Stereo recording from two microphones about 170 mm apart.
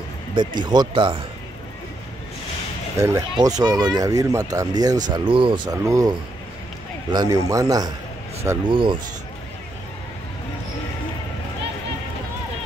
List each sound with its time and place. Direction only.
0.6 s speech: 25° right (ahead or behind)
3.0 s speech: 20° right (ahead or behind)